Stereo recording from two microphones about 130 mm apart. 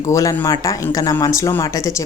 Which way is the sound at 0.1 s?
25° left (ahead or behind).